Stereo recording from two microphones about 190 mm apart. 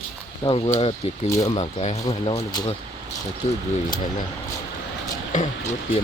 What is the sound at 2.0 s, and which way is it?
Speech, 25° left (ahead or behind).